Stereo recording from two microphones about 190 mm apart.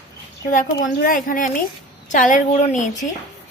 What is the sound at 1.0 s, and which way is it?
A woman's voice, 45° left (ahead or behind).